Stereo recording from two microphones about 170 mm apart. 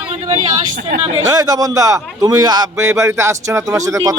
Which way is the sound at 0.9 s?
45° right (ahead or behind).